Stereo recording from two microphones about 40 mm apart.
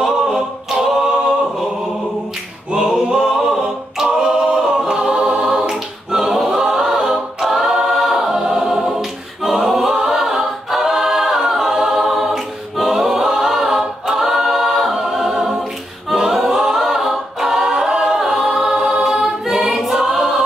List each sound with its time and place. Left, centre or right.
0.0 s a capella: centre
2.7 s a capella: centre
4.6 s choir: centre
5.6 s a capella: centre
19.0 s choir: centre